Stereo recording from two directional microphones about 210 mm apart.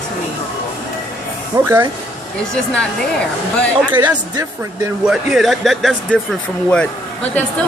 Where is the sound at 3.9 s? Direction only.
20° right (ahead or behind).